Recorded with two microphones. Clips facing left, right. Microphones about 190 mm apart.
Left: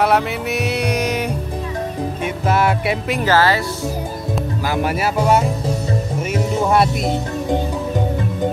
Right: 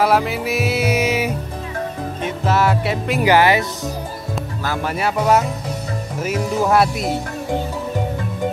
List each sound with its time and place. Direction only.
0.0 s music: centre (ahead or behind)
2.2 s music: 10° left (ahead or behind)
3.3 s speech: 15° right (ahead or behind)
4.6 s speech: 10° left (ahead or behind)